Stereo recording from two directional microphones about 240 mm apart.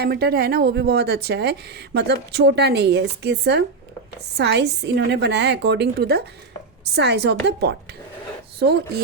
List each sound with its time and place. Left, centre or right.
0.0 s a woman's voice: right